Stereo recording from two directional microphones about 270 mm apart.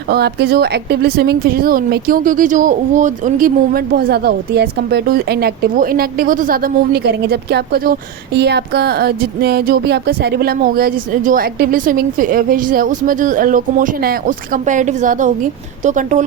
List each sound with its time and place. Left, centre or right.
0.1 s a woman's voice: right